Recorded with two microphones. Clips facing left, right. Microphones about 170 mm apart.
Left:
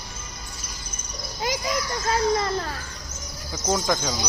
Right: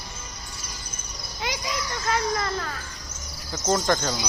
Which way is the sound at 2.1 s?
30° left (ahead or behind).